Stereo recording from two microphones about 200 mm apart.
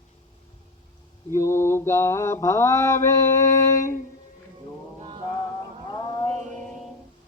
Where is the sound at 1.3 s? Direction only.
15° left (ahead or behind).